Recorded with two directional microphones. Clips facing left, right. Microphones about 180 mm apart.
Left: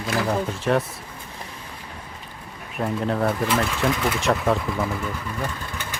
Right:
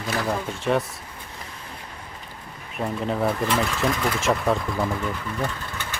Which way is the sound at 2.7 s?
Centre (ahead or behind).